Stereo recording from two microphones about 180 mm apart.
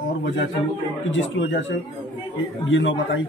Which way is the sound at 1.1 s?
90° left.